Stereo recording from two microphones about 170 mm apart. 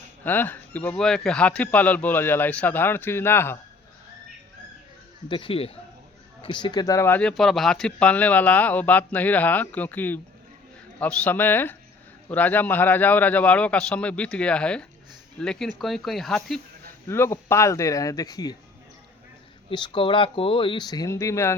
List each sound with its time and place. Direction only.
0.3 s speech: 10° left (ahead or behind)
5.3 s speech: 30° left (ahead or behind); by 16.6 s centre (ahead or behind)
17.1 s speech: 15° left (ahead or behind)
19.7 s speech: 25° left (ahead or behind)